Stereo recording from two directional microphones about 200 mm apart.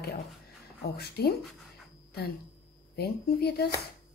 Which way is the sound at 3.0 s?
55° left (ahead or behind).